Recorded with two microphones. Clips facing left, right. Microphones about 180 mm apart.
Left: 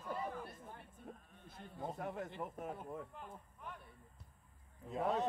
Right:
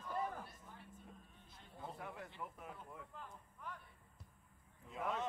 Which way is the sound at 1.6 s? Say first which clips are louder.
Left 6 dB; 45° left (ahead or behind).